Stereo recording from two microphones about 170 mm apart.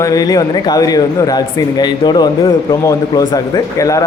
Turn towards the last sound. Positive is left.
turn(degrees=20)  # may be behind; listen again after turning